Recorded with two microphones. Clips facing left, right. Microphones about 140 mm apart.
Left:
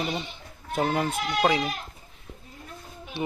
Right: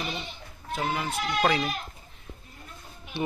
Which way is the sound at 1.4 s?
15° left (ahead or behind).